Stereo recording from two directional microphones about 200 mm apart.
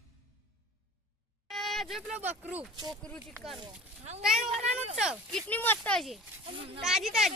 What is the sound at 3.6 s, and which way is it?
Speech, 30° right (ahead or behind).